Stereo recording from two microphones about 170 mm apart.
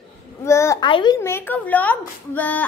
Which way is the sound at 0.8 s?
25° left (ahead or behind).